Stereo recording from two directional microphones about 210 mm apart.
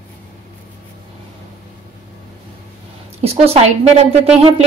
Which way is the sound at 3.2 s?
30° right (ahead or behind).